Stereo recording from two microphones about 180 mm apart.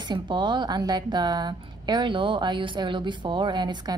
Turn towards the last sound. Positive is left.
turn(degrees=-25)  # may be behind; listen again after turning